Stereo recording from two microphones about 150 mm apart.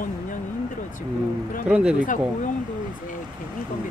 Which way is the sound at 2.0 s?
60° left (ahead or behind).